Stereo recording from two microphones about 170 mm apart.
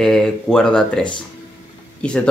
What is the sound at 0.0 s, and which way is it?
Speech, 5° left (ahead or behind).